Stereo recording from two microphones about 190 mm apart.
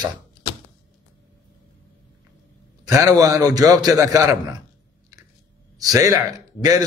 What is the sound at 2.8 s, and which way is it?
A man's voice, 20° right (ahead or behind).